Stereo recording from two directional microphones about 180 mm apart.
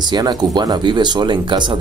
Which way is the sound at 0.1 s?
25° right (ahead or behind).